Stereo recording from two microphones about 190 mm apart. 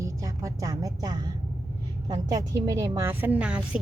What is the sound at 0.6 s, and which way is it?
Speech, 20° right (ahead or behind).